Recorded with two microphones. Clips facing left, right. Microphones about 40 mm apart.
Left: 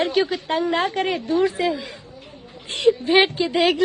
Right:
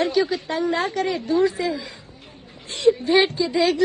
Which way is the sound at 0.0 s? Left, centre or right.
Left.